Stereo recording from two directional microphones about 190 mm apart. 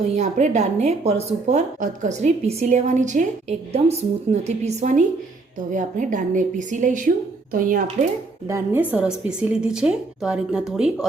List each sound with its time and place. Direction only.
0.2 s a woman's voice: 40° right (ahead or behind)
8.4 s a woman's voice: 15° right (ahead or behind)